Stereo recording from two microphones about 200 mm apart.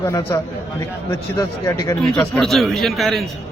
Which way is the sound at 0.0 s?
15° left (ahead or behind).